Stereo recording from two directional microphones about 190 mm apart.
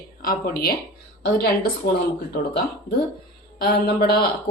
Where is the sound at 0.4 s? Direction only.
50° left (ahead or behind).